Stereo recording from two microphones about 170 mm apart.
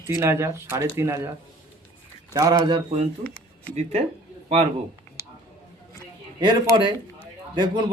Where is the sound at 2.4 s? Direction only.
20° right (ahead or behind).